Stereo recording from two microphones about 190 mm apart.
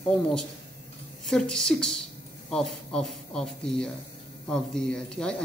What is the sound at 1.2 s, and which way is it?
Speech, 5° left (ahead or behind).